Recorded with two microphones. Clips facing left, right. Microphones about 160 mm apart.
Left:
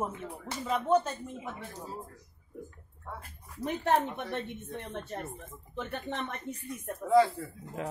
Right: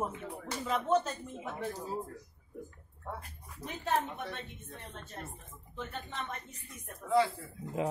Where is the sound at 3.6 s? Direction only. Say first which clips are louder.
Left 5 dB; 60° left (ahead or behind).